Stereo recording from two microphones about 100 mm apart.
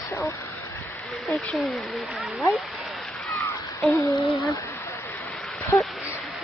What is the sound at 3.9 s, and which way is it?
Speech, 30° left (ahead or behind).